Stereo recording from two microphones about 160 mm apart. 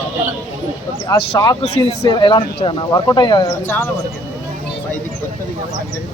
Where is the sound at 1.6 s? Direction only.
40° left (ahead or behind).